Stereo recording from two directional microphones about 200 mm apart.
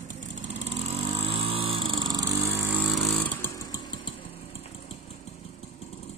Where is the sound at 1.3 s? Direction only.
25° right (ahead or behind).